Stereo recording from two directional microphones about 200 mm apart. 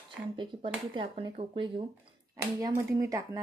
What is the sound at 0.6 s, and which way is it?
Speech, 25° right (ahead or behind).